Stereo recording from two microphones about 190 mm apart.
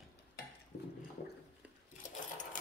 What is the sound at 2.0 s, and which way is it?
Sewing machine, 40° left (ahead or behind).